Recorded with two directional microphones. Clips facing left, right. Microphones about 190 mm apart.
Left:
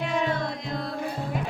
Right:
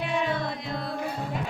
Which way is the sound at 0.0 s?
5° right (ahead or behind).